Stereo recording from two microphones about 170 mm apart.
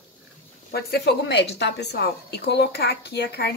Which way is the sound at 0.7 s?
75° left (ahead or behind).